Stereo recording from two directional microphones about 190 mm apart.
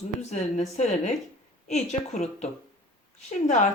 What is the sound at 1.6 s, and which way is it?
Speech, 35° left (ahead or behind).